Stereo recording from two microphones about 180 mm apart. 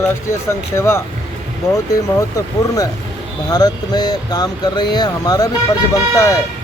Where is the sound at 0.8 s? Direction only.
15° left (ahead or behind).